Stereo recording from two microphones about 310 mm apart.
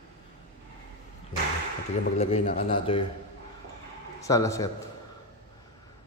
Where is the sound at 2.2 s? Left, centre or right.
Centre.